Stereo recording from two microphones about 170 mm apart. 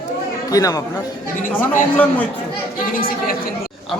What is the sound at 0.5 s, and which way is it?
Speech, 20° left (ahead or behind).